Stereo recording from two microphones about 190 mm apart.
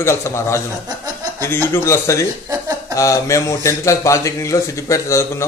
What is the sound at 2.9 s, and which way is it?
A man's voice, 15° left (ahead or behind).